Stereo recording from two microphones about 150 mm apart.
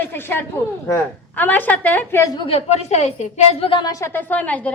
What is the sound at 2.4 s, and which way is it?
A woman's voice, 45° left (ahead or behind).